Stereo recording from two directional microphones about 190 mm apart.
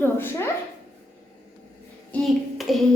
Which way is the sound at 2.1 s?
5° left (ahead or behind).